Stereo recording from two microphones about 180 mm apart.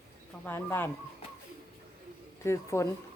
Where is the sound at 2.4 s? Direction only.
15° left (ahead or behind).